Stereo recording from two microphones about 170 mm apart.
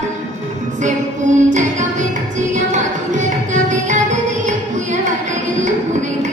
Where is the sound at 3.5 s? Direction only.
45° right (ahead or behind).